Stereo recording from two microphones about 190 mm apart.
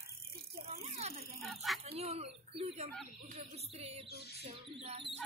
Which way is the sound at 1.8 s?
35° right (ahead or behind).